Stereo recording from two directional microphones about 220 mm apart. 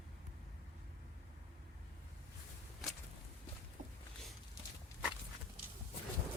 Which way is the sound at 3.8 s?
35° right (ahead or behind).